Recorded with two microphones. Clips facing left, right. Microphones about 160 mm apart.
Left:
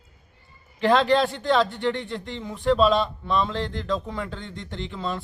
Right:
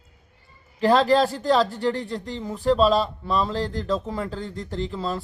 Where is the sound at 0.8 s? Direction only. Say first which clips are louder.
Right 1 dB; 40° right (ahead or behind).